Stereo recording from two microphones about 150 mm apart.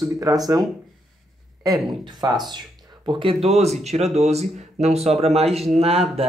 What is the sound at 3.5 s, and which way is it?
Speech, 45° right (ahead or behind).